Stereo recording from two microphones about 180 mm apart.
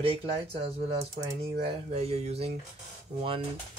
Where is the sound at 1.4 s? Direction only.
35° right (ahead or behind).